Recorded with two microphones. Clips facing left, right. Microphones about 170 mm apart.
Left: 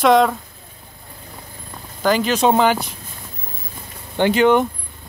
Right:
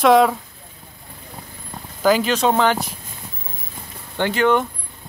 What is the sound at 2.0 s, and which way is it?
Speech, centre (ahead or behind).